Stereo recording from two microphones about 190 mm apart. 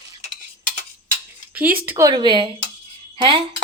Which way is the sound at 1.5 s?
10° right (ahead or behind).